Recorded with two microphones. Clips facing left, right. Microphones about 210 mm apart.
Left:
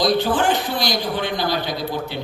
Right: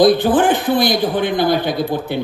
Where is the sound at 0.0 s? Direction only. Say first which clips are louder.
Right 6 dB; 55° right (ahead or behind).